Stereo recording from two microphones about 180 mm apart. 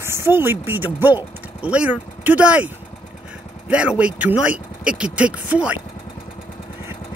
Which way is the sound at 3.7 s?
5° right (ahead or behind).